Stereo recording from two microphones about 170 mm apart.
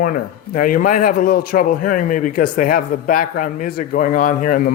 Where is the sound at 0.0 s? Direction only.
55° left (ahead or behind).